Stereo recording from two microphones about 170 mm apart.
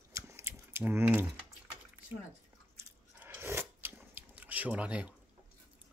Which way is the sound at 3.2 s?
15° right (ahead or behind).